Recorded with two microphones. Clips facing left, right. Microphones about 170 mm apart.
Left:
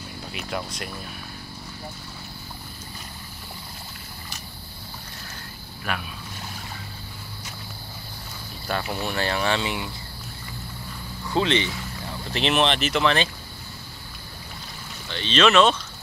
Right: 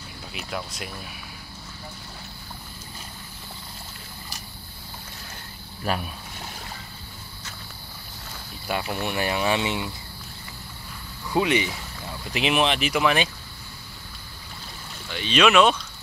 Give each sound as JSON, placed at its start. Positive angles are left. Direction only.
{"t": 0.3, "sound": "speech", "side_deg": 0}
{"t": 5.9, "sound": "speech", "side_deg": -35}
{"t": 8.7, "sound": "speech", "side_deg": -10}
{"t": 11.3, "sound": "speech", "side_deg": -10}
{"t": 15.0, "sound": "speech", "side_deg": -10}